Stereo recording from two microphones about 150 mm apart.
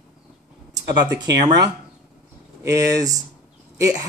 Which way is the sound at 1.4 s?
30° right (ahead or behind).